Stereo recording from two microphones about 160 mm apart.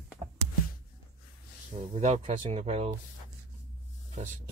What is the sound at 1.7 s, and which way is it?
Speech, 45° right (ahead or behind).